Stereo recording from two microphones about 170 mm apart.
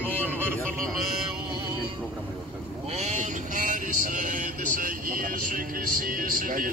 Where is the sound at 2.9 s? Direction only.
40° right (ahead or behind).